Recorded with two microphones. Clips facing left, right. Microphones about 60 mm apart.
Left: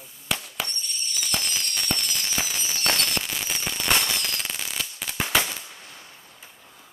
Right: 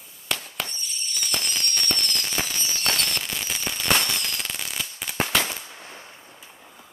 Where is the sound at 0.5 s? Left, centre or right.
Centre.